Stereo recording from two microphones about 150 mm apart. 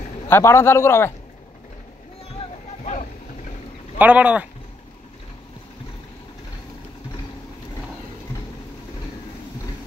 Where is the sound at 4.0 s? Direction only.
10° right (ahead or behind).